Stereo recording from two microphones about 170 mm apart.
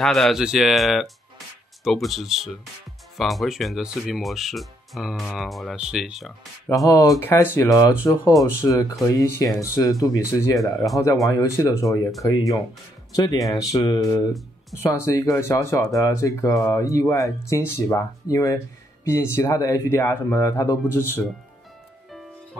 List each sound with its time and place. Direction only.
0.0 s speech: centre (ahead or behind)
6.7 s speech: 10° left (ahead or behind)
13.1 s speech: 20° left (ahead or behind)